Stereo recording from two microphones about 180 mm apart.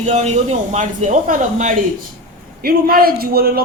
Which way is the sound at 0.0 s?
40° right (ahead or behind).